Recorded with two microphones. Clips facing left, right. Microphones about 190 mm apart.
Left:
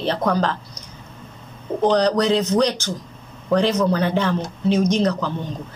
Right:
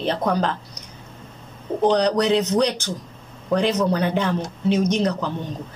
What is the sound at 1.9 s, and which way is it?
Mantra, 15° right (ahead or behind).